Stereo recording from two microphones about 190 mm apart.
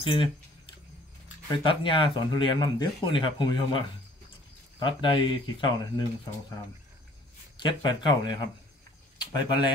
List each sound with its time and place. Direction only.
0.0 s speech: 25° left (ahead or behind)
1.5 s speech: 25° left (ahead or behind)
7.5 s speech: 25° left (ahead or behind)